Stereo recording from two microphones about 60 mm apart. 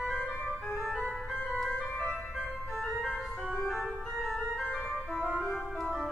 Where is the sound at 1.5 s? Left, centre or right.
Centre.